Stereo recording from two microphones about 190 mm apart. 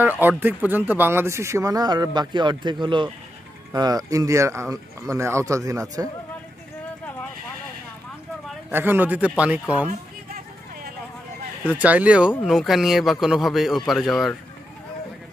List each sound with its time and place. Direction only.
0.0 s speech: 10° right (ahead or behind)
8.6 s speech: 10° right (ahead or behind)
11.8 s a man's voice: 10° right (ahead or behind)